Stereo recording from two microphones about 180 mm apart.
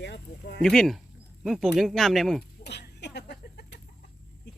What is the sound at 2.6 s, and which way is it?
Cough, 65° left (ahead or behind).